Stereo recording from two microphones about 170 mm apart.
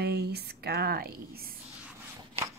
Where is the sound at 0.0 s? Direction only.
70° right (ahead or behind).